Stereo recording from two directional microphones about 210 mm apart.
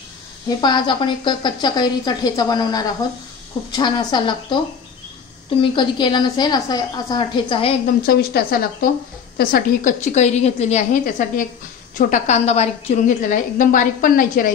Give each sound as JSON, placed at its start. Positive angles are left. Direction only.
{"t": 0.5, "sound": "speech", "side_deg": 20}
{"t": 5.6, "sound": "speech", "side_deg": 25}
{"t": 7.8, "sound": "a woman's voice", "side_deg": 45}